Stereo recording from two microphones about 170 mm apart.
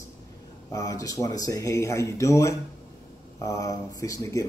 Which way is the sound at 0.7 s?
20° left (ahead or behind).